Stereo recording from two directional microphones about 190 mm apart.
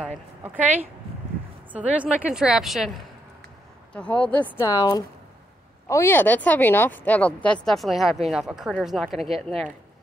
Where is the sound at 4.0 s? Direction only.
5° left (ahead or behind).